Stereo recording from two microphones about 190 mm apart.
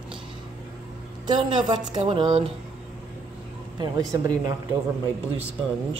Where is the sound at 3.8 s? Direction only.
20° right (ahead or behind).